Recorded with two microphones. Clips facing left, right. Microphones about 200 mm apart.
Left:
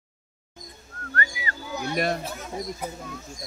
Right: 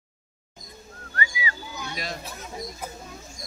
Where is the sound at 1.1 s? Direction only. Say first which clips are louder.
Even; 55° left (ahead or behind).